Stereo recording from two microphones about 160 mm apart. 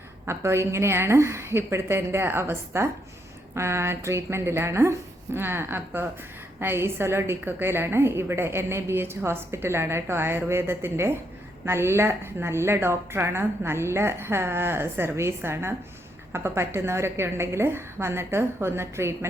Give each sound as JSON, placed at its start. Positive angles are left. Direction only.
{"t": 0.3, "sound": "a woman's voice", "side_deg": -15}